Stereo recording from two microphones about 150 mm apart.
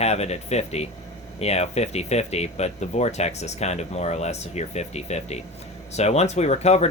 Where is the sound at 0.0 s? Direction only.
45° left (ahead or behind).